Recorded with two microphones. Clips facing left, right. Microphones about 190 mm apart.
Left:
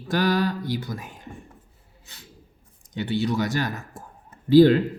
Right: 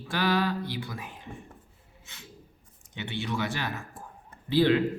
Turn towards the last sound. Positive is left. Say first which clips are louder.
# left 8 dB
turn(degrees=40)  # may be behind; listen again after turning